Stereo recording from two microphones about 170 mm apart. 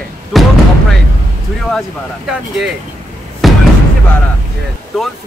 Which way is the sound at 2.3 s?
Centre (ahead or behind).